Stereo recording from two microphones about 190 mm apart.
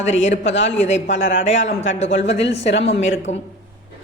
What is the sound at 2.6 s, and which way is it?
Speech, 35° left (ahead or behind).